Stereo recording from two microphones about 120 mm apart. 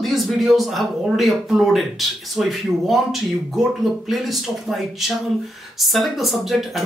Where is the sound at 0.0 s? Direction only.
Centre (ahead or behind).